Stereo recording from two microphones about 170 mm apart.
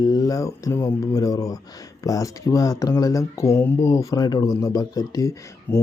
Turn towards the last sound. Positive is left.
turn(degrees=20)  # may be behind; listen again after turning